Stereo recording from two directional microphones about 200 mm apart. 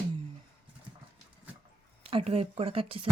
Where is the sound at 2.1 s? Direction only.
30° right (ahead or behind).